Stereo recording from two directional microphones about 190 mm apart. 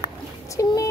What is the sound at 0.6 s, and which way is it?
Speech, 15° left (ahead or behind).